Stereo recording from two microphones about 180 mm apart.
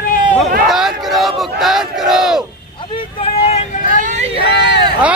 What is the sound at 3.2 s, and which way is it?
Vehicle, 35° left (ahead or behind).